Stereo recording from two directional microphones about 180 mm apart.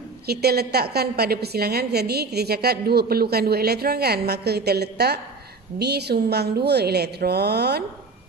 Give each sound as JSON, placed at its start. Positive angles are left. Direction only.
{"t": 0.3, "sound": "a woman's voice", "side_deg": -60}